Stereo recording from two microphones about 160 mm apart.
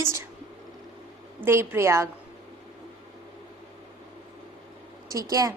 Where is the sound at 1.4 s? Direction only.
15° right (ahead or behind).